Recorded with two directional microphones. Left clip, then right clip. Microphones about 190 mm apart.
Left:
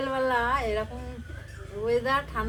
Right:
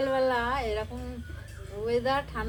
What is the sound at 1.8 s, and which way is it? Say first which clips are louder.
Speech: left 2 dB; 15° left (ahead or behind).